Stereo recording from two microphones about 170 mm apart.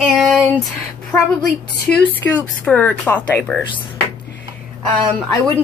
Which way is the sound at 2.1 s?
10° left (ahead or behind).